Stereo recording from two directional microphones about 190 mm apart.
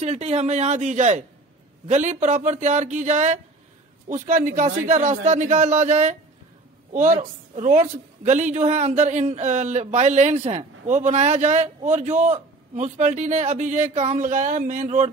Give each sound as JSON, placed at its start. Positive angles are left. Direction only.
{"t": 0.0, "sound": "a woman's voice", "side_deg": -35}